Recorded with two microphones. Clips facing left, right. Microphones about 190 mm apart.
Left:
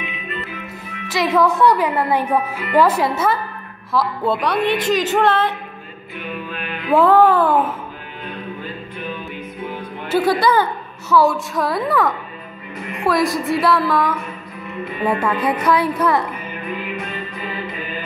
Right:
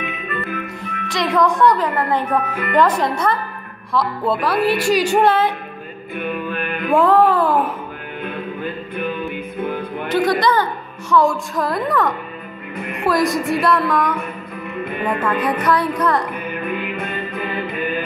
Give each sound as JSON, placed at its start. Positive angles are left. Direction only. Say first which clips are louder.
{"t": 0.0, "sound": "music", "louder": "right 3 dB", "side_deg": -55}
{"t": 1.0, "sound": "a woman's voice", "louder": "left 1 dB", "side_deg": 5}
{"t": 6.1, "sound": "music", "louder": "right 5 dB", "side_deg": -55}
{"t": 6.9, "sound": "music", "louder": "left 1 dB", "side_deg": 0}
{"t": 8.9, "sound": "music", "louder": "right 6 dB", "side_deg": -55}
{"t": 10.0, "sound": "a woman's voice", "louder": "left 1 dB", "side_deg": 5}
{"t": 12.9, "sound": "music", "louder": "even", "side_deg": 0}
{"t": 15.0, "sound": "speech", "louder": "left 1 dB", "side_deg": 10}
{"t": 16.6, "sound": "music", "louder": "right 1 dB", "side_deg": -55}